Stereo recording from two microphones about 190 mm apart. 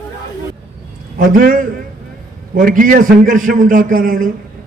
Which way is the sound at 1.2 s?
45° right (ahead or behind).